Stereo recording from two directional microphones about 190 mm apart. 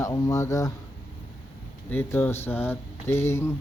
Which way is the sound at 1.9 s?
10° left (ahead or behind).